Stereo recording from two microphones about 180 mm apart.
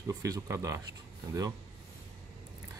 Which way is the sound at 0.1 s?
20° right (ahead or behind).